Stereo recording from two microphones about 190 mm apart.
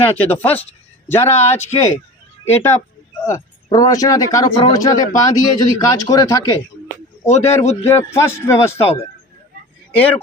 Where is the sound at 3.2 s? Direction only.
20° left (ahead or behind).